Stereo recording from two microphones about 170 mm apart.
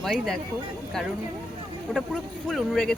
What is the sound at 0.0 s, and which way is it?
Speech, centre (ahead or behind).